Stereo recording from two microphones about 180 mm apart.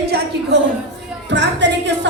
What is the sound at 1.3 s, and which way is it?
Speech, 75° right (ahead or behind).